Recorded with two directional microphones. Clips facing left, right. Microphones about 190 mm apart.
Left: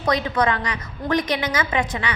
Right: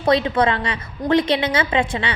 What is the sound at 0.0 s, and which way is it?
A woman's voice, 25° right (ahead or behind).